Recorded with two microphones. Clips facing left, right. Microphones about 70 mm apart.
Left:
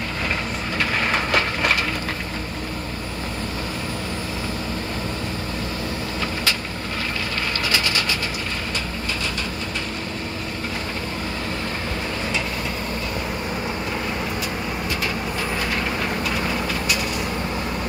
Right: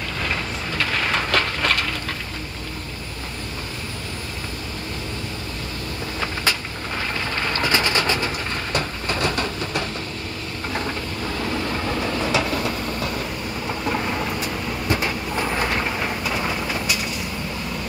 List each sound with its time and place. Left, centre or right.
0.7 s a sound: centre
7.6 s train: right
8.7 s train: right